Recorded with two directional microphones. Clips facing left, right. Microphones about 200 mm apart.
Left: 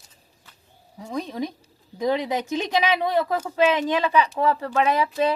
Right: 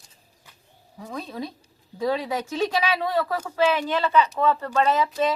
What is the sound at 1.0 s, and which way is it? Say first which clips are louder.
A woman's voice: left 4 dB; 15° left (ahead or behind).